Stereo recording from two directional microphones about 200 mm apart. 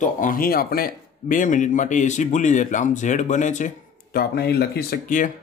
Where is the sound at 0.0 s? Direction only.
40° left (ahead or behind).